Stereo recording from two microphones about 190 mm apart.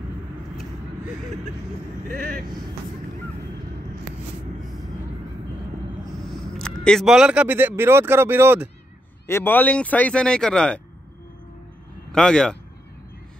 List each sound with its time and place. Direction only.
2.0 s speech: 50° right (ahead or behind)
6.6 s speech: 5° left (ahead or behind)
9.3 s speech: 10° left (ahead or behind)
12.1 s speech: 5° left (ahead or behind)